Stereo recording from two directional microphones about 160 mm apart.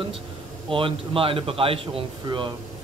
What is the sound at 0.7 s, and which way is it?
A man's voice, 35° right (ahead or behind).